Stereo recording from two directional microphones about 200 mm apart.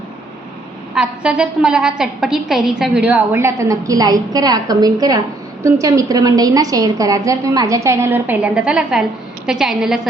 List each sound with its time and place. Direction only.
0.9 s a woman's voice: 5° right (ahead or behind)